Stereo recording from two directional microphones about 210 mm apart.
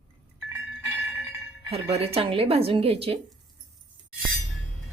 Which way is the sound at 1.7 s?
30° right (ahead or behind).